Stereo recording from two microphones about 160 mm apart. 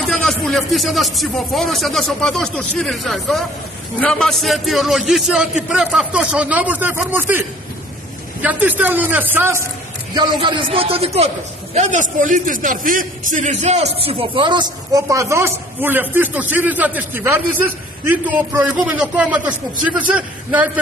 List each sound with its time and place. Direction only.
0.0 s a man's voice: 5° left (ahead or behind); by 9.7 s 15° right (ahead or behind)
10.1 s a man's voice: 30° right (ahead or behind); by 13.8 s 45° right (ahead or behind)
14.0 s a man's voice: 30° right (ahead or behind); by 20.8 s 10° right (ahead or behind)